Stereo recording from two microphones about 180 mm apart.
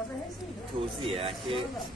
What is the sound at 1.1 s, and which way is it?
Speech, 30° right (ahead or behind).